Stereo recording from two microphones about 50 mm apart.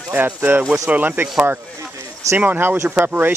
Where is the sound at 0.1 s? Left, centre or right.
Right.